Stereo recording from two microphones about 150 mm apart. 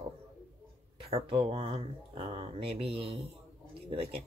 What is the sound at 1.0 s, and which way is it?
Speech, 40° right (ahead or behind).